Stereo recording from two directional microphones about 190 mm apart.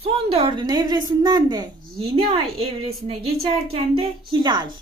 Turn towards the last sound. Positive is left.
turn(degrees=-25)  # may be behind; listen again after turning